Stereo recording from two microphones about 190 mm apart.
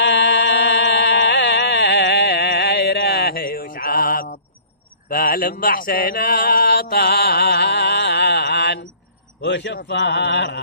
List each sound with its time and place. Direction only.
0.0 s music: 65° left (ahead or behind); by 4.4 s 50° left (ahead or behind)
5.0 s mantra: 50° left (ahead or behind)
9.4 s speech: 65° left (ahead or behind)